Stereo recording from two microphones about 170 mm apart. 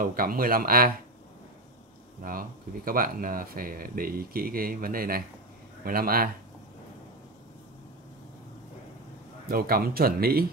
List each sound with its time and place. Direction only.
0.0 s speech: 55° right (ahead or behind)
2.2 s speech: 60° right (ahead or behind)
9.5 s speech: 60° right (ahead or behind)